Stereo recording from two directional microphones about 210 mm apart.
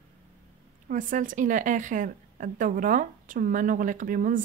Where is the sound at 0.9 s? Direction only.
40° right (ahead or behind).